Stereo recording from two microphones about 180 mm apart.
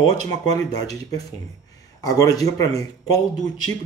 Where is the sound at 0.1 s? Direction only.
20° left (ahead or behind).